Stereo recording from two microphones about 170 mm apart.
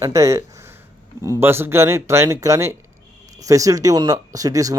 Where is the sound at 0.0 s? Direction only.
20° right (ahead or behind).